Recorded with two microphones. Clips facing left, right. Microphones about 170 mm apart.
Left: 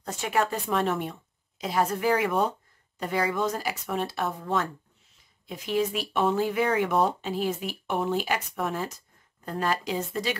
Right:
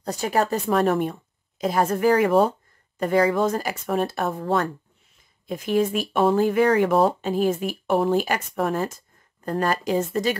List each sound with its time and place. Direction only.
0.0 s speech: 35° right (ahead or behind)
5.5 s speech: 50° right (ahead or behind)